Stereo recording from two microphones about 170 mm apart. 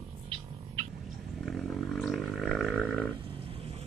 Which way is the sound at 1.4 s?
Centre (ahead or behind).